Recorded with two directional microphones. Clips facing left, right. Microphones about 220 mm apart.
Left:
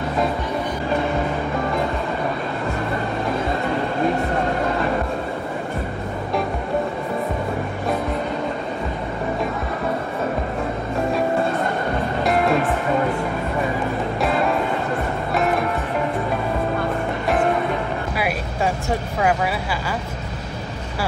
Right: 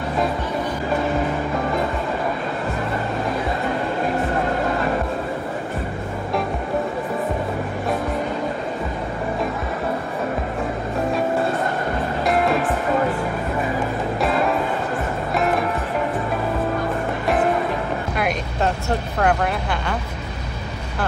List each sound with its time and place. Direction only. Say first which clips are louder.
12.2 s music: left 1 dB; centre (ahead or behind)
14.2 s music: even; centre (ahead or behind)
18.1 s music: right 1 dB; 10° left (ahead or behind)